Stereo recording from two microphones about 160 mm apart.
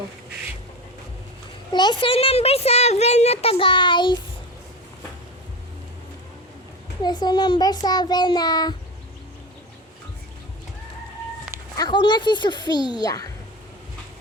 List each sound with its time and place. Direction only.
1.7 s speech: 30° left (ahead or behind)
7.0 s a child's voice: 25° left (ahead or behind)
11.8 s a child's voice: 30° left (ahead or behind)